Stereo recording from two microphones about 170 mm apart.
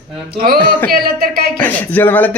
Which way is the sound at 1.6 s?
10° left (ahead or behind).